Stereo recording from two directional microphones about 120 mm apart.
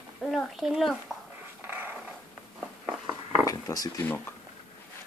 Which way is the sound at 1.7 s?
15° right (ahead or behind).